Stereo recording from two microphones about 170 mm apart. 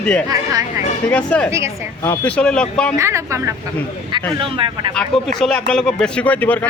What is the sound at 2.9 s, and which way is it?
Speech, 15° right (ahead or behind).